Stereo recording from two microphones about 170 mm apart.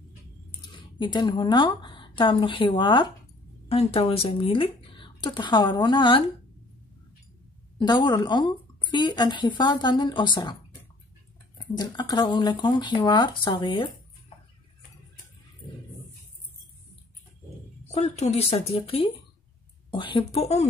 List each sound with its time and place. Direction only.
0.5 s speech: 30° left (ahead or behind)
7.8 s speech: 25° left (ahead or behind)
11.5 s speech: 25° left (ahead or behind)
17.9 s speech: 40° left (ahead or behind)